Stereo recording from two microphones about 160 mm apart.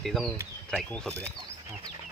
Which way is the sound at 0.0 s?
Centre (ahead or behind).